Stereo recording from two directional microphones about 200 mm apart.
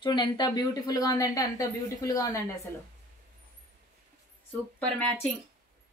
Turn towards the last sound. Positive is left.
turn(degrees=10)  # may be behind; listen again after turning